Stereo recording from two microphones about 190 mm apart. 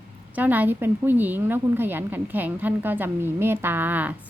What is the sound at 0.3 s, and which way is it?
A woman's voice, 10° right (ahead or behind).